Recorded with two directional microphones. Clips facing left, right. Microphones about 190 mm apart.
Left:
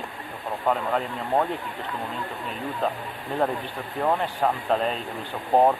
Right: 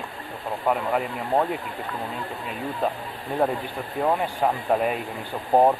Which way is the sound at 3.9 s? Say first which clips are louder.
Right 1 dB; 10° right (ahead or behind).